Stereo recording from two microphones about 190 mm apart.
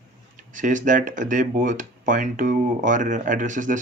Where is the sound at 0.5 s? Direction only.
40° right (ahead or behind).